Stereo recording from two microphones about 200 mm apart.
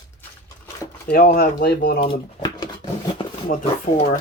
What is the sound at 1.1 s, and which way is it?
Speech, 50° left (ahead or behind).